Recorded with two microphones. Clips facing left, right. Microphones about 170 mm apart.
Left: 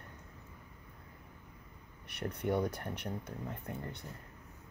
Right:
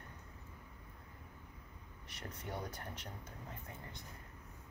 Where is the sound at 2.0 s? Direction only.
65° left (ahead or behind).